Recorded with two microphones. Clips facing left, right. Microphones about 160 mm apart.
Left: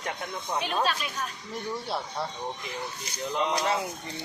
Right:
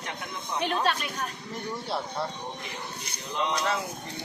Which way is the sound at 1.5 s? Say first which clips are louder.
Left 1 dB; centre (ahead or behind).